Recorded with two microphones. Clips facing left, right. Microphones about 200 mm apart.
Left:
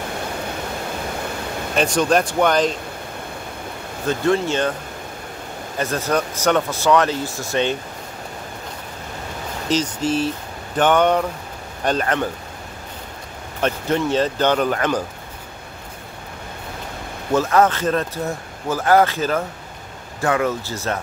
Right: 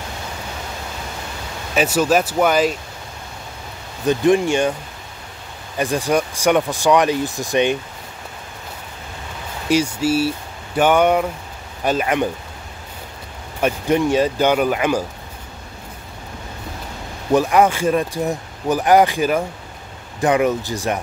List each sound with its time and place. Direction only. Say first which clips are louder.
1.8 s speech: right 1 dB; 5° right (ahead or behind)
4.0 s speech: right 4 dB; 15° right (ahead or behind)
5.8 s speech: right 3 dB; 15° right (ahead or behind)
9.7 s speech: right 3 dB; 10° right (ahead or behind)
13.6 s speech: right 3 dB; 10° right (ahead or behind)
17.3 s speech: right 2 dB; 15° right (ahead or behind)